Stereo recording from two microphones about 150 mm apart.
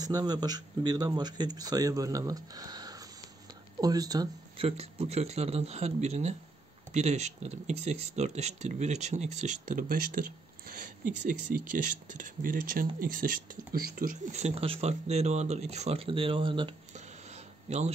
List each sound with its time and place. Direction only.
0.0 s speech: 25° right (ahead or behind)
4.6 s speech: 45° right (ahead or behind); by 13.6 s 70° right (ahead or behind)
13.7 s speech: 80° right; by 16.7 s 35° right (ahead or behind)
16.9 s a sound: 50° right (ahead or behind)